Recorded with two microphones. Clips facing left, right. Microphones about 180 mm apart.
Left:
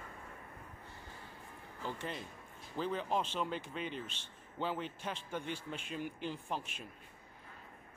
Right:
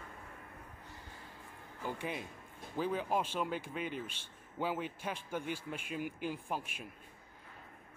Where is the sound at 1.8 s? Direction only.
10° right (ahead or behind).